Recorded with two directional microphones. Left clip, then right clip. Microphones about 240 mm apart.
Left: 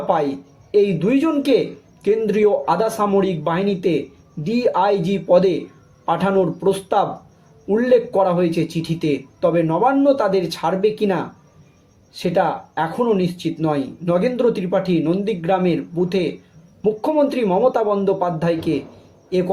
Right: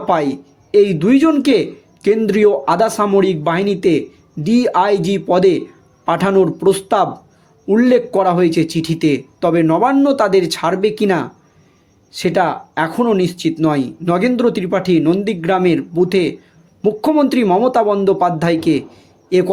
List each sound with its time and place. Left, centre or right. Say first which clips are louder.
0.1 s speech: right 4 dB; right